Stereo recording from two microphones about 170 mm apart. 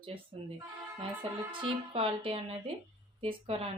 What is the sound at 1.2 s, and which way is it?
Speech, 30° right (ahead or behind).